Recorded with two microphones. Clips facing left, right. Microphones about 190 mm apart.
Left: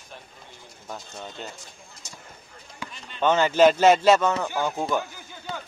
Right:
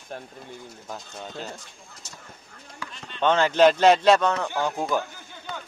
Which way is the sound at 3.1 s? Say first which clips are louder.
Even; 5° left (ahead or behind).